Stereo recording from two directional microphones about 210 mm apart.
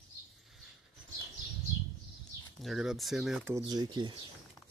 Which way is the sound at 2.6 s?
Centre (ahead or behind).